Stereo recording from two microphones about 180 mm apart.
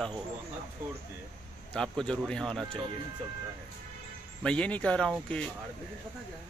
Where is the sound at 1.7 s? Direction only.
5° left (ahead or behind).